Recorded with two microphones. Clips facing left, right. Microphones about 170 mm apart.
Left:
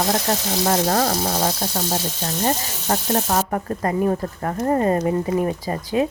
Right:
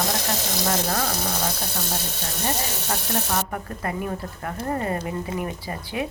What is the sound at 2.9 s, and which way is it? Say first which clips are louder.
Speech: left 7 dB; 55° left (ahead or behind).